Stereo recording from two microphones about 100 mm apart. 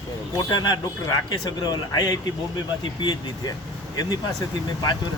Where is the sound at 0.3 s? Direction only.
45° left (ahead or behind).